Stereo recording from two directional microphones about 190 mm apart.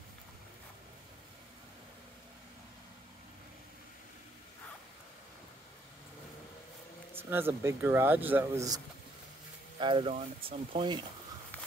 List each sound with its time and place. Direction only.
7.2 s speech: 10° right (ahead or behind)
10.1 s speech: 35° right (ahead or behind)